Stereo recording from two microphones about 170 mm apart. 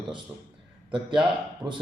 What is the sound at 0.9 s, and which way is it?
Speech, 30° right (ahead or behind).